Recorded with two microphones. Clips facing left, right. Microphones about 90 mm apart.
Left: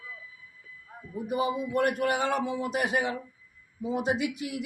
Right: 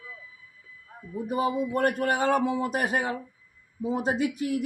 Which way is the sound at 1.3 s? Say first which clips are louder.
Right 2 dB; 40° right (ahead or behind).